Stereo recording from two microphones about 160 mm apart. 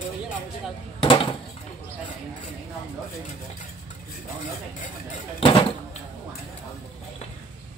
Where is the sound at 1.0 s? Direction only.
35° left (ahead or behind).